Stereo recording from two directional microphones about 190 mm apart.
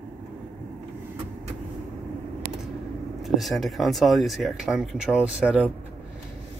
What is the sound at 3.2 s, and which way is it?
Speech, centre (ahead or behind).